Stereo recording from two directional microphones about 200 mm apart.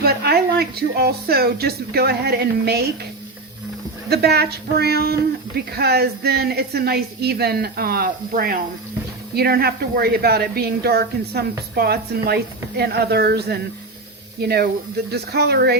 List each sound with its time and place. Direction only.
0.0 s speech: 50° right (ahead or behind)
4.1 s speech: 55° right (ahead or behind)